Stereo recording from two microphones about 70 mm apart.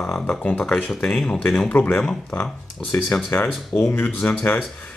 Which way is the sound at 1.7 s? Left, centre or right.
Left.